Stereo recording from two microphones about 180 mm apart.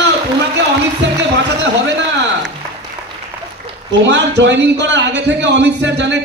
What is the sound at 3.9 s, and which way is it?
A man's voice, 75° right (ahead or behind).